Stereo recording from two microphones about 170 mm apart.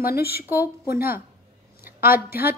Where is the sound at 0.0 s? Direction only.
65° left (ahead or behind).